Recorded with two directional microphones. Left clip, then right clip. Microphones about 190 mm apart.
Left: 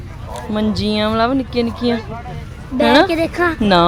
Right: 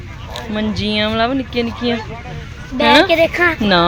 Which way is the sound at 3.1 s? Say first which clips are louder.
Right 4 dB; 50° left (ahead or behind).